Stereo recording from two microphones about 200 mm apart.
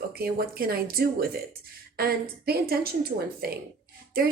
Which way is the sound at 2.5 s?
50° right (ahead or behind).